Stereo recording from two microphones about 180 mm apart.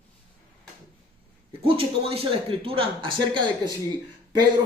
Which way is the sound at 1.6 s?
30° right (ahead or behind).